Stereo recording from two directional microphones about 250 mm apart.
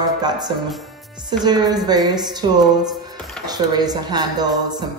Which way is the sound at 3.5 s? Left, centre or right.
Centre.